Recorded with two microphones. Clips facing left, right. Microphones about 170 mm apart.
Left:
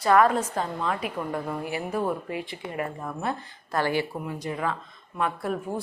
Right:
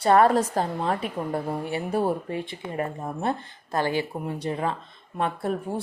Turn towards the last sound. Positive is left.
turn(degrees=-30)  # may be behind; listen again after turning